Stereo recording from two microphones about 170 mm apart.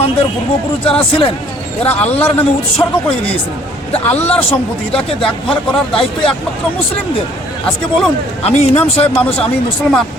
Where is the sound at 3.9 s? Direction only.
40° left (ahead or behind).